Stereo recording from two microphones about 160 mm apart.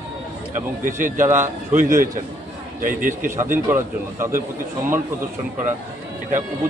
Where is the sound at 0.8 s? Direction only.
55° right (ahead or behind).